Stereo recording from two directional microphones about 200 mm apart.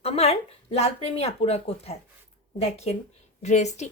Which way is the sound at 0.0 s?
30° left (ahead or behind).